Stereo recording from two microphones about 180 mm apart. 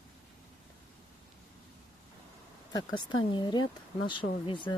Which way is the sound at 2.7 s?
25° left (ahead or behind).